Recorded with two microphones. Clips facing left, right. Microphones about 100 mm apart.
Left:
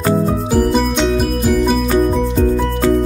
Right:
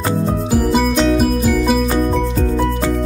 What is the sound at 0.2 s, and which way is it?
Music, centre (ahead or behind).